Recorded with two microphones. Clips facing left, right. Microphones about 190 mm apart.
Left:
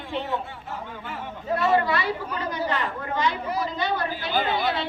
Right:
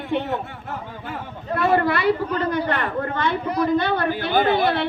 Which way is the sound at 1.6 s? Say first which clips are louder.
Right 3 dB; 55° right (ahead or behind).